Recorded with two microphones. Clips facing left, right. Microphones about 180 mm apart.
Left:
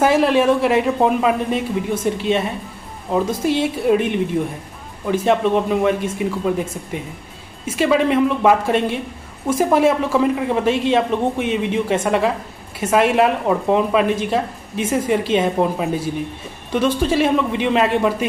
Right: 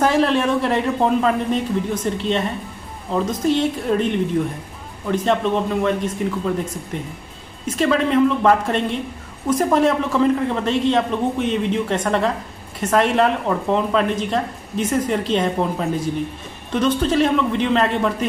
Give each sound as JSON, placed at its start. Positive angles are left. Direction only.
{"t": 0.0, "sound": "speech", "side_deg": 5}